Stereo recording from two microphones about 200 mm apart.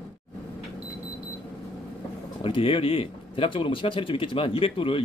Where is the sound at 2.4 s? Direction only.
25° left (ahead or behind).